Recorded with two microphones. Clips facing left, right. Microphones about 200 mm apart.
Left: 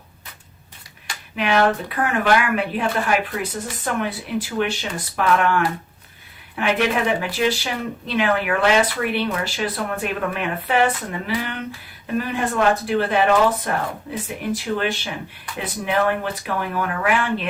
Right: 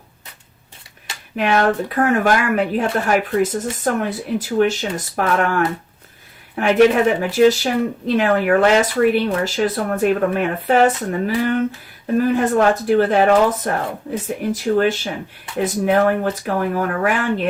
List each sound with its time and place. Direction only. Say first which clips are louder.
1.4 s speech: right 2 dB; 45° right (ahead or behind)